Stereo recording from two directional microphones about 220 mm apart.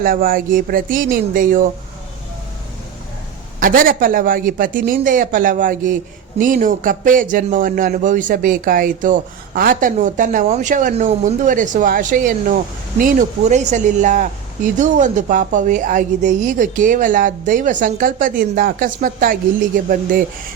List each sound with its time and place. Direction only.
0.0 s speech: 40° right (ahead or behind)
3.6 s speech: 40° right (ahead or behind)